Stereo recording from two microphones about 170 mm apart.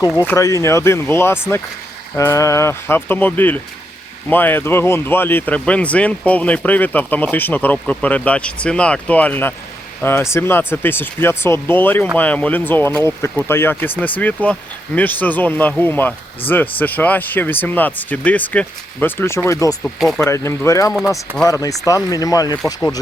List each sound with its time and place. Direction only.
0.0 s speech: 15° left (ahead or behind)
19.8 s speech: centre (ahead or behind)
20.1 s speech: 15° left (ahead or behind)